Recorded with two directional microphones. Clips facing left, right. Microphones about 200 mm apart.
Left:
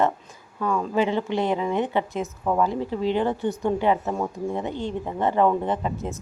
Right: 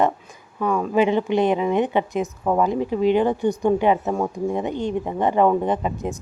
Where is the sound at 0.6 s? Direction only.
15° right (ahead or behind).